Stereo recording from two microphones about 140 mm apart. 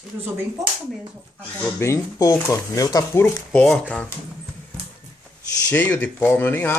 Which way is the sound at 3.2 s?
10° left (ahead or behind).